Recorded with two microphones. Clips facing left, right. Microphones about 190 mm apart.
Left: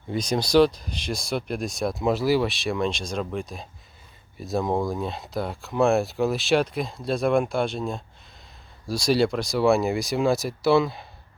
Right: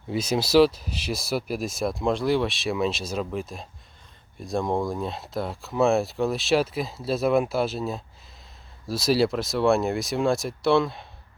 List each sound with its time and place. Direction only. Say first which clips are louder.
0.1 s speech: even; 5° right (ahead or behind)